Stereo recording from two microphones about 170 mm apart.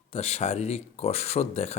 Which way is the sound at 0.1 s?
35° left (ahead or behind).